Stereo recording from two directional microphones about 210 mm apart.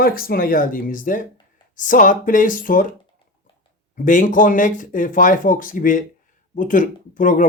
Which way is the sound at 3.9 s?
40° left (ahead or behind).